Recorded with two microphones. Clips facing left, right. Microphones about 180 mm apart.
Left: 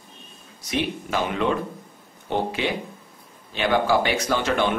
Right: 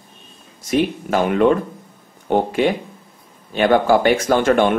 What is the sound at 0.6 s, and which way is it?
Speech, 50° right (ahead or behind).